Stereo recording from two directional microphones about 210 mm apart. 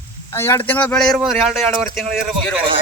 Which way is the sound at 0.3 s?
10° left (ahead or behind).